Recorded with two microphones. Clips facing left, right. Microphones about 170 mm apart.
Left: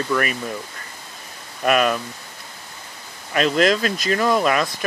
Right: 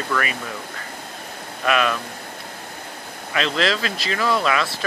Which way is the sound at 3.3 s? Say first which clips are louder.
Left 4 dB; 45° left (ahead or behind).